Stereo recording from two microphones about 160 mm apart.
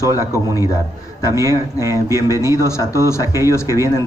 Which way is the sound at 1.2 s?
20° right (ahead or behind).